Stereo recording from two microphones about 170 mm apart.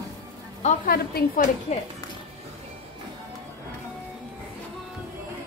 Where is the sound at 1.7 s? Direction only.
45° left (ahead or behind).